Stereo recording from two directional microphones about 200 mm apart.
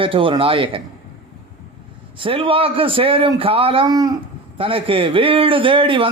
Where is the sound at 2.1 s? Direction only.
25° right (ahead or behind).